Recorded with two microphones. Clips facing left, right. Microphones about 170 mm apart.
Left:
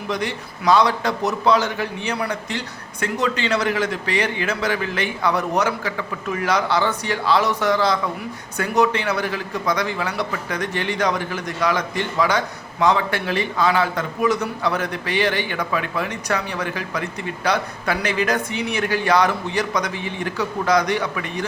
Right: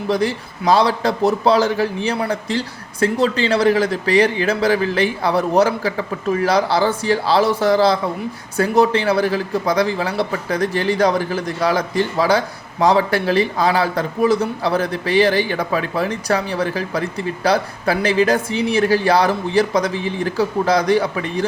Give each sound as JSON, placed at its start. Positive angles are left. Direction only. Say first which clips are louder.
{"t": 0.1, "sound": "a man's voice", "louder": "right 7 dB", "side_deg": -30}